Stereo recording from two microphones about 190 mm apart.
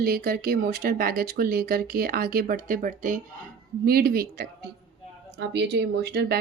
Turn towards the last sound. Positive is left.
turn(degrees=-60)  # may be behind; listen again after turning